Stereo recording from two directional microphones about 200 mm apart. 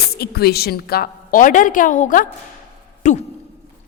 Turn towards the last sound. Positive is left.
turn(degrees=35)  # may be behind; listen again after turning